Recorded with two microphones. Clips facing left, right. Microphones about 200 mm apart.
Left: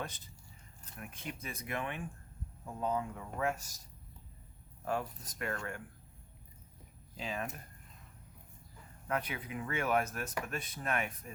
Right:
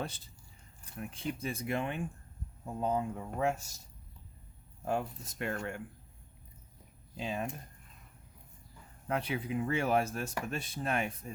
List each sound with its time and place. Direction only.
0.9 s speech: 30° right (ahead or behind)
4.9 s speech: 25° right (ahead or behind)
7.2 s speech: 25° right (ahead or behind)
9.0 s speech: 30° right (ahead or behind)